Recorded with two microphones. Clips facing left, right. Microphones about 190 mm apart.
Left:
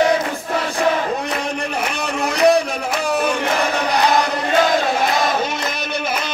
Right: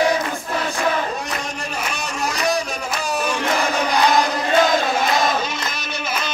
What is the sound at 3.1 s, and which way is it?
Crowd, 60° left (ahead or behind).